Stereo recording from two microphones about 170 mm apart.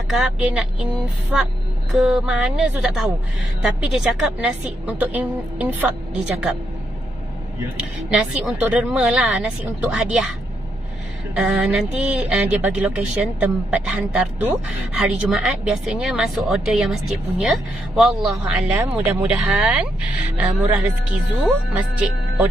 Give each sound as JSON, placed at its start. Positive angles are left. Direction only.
{"t": 0.1, "sound": "a woman's voice", "side_deg": -5}
{"t": 8.1, "sound": "speech", "side_deg": -10}
{"t": 11.3, "sound": "a woman's voice", "side_deg": -5}